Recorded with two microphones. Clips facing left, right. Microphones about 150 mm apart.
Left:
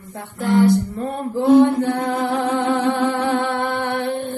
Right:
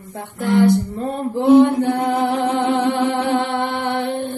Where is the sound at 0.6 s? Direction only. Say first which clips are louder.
Right 1 dB; 20° right (ahead or behind).